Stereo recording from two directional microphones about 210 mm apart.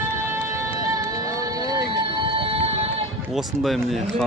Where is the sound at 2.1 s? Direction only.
25° right (ahead or behind).